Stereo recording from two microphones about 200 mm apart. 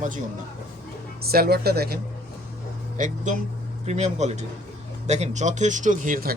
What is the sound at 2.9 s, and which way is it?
Speech, 40° right (ahead or behind).